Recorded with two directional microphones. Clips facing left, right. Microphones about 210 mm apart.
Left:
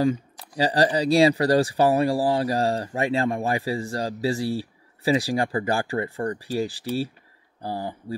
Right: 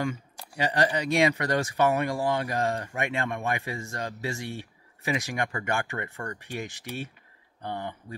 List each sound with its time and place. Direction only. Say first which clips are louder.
0.6 s speech: left 5 dB; 35° left (ahead or behind)